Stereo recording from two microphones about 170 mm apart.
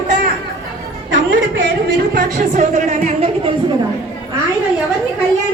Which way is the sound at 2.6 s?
45° right (ahead or behind).